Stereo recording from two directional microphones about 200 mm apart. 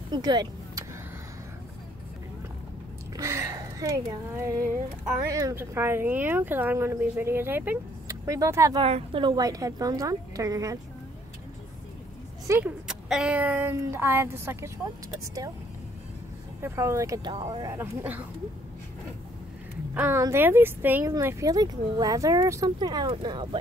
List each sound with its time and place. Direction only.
0.1 s vehicle: 20° right (ahead or behind)
3.2 s gasp: 15° right (ahead or behind)
5.2 s speech: 15° right (ahead or behind)
8.8 s speech: 30° right (ahead or behind)
12.4 s speech: 5° right (ahead or behind)
16.6 s speech: 15° right (ahead or behind)
19.9 s speech: 10° right (ahead or behind)